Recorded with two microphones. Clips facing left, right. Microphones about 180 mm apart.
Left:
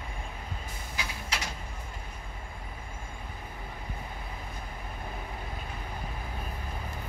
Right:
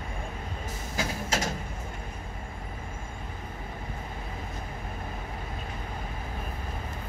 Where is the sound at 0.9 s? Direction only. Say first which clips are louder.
Right 7 dB; 45° right (ahead or behind).